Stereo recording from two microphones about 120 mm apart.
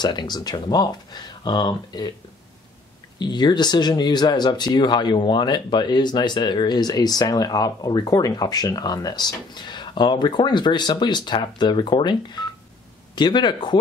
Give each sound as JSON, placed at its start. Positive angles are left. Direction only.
{"t": 0.0, "sound": "speech", "side_deg": 35}
{"t": 3.2, "sound": "speech", "side_deg": 35}